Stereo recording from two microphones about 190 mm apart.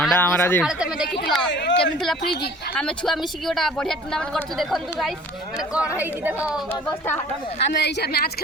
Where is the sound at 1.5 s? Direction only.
65° left (ahead or behind).